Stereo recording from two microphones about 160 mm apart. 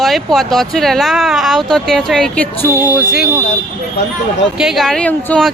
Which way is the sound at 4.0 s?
90° left.